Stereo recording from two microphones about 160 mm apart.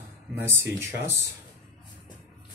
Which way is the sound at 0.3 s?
15° right (ahead or behind).